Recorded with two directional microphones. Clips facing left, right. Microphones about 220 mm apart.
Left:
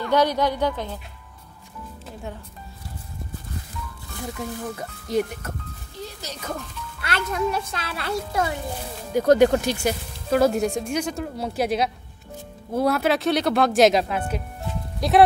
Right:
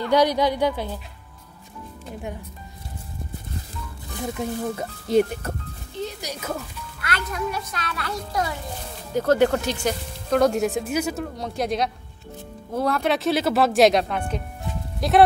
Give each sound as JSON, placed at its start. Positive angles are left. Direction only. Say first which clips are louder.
{"t": 0.1, "sound": "a woman's voice", "louder": "right 1 dB", "side_deg": -10}
{"t": 4.2, "sound": "speech", "louder": "right 4 dB", "side_deg": -25}
{"t": 5.9, "sound": "speech", "louder": "right 5 dB", "side_deg": -15}
{"t": 7.0, "sound": "speech", "louder": "left 3 dB", "side_deg": 30}
{"t": 9.1, "sound": "speech", "louder": "left 3 dB", "side_deg": 15}
{"t": 11.3, "sound": "speech", "louder": "left 4 dB", "side_deg": 5}